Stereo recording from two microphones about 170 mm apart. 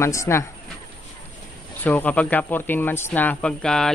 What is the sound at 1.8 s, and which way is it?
Speech, 10° left (ahead or behind).